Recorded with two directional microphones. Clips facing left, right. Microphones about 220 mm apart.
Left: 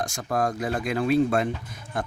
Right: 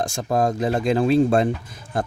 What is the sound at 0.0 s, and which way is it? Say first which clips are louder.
Speech: right 5 dB; 25° right (ahead or behind).